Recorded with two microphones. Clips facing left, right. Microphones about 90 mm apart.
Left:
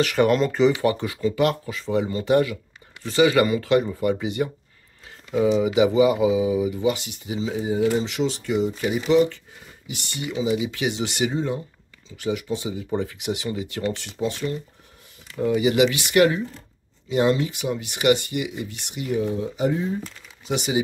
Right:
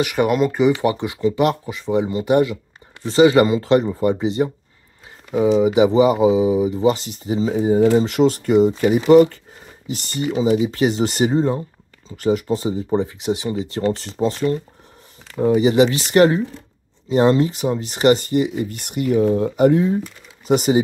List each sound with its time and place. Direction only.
0.0 s speech: 15° right (ahead or behind); by 9.4 s 50° right (ahead or behind)
9.8 s speech: 40° right (ahead or behind)
12.9 s speech: 25° right (ahead or behind); by 20.0 s 65° right (ahead or behind)
20.4 s speech: 45° right (ahead or behind)